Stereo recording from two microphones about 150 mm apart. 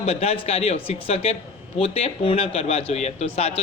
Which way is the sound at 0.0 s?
45° left (ahead or behind).